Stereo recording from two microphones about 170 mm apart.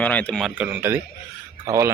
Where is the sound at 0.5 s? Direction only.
10° right (ahead or behind).